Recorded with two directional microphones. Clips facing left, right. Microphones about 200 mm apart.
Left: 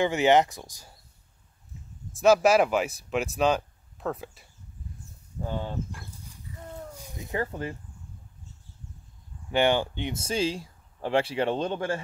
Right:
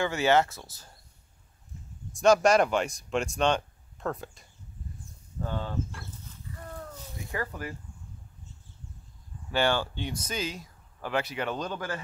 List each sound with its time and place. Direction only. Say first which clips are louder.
0.0 s speech: left 3 dB; 15° left (ahead or behind)
2.1 s speech: left 1 dB; 5° left (ahead or behind)
5.4 s horse: left 1 dB; 15° left (ahead or behind)
6.9 s cat: left 3 dB; 15° left (ahead or behind)
9.5 s speech: left 3 dB; 20° left (ahead or behind)